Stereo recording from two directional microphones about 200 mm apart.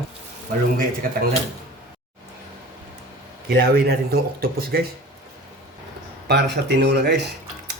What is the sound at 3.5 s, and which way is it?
Speech, 50° right (ahead or behind).